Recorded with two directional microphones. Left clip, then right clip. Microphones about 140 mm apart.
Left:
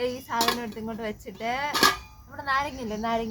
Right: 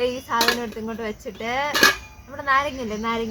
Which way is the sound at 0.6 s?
35° left (ahead or behind).